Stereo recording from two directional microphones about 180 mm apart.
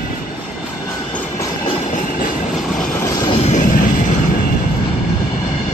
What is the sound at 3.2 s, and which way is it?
Vehicle, 35° left (ahead or behind).